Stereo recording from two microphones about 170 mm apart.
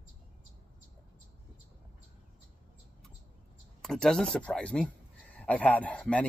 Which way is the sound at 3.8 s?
5° left (ahead or behind).